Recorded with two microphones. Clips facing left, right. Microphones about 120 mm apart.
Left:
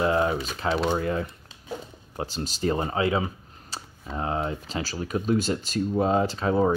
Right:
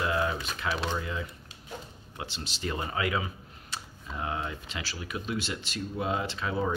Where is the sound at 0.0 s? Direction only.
35° left (ahead or behind).